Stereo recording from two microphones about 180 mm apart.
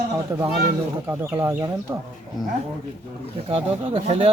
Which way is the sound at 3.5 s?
30° right (ahead or behind).